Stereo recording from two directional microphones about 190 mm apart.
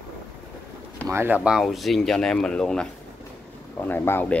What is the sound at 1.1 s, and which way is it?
Speech, 10° right (ahead or behind).